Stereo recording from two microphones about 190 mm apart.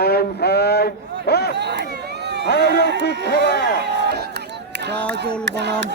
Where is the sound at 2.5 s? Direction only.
60° left (ahead or behind).